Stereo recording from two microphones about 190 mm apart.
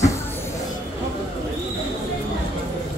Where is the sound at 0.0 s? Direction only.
15° left (ahead or behind).